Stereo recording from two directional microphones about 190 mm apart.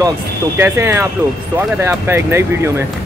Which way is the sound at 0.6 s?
10° right (ahead or behind).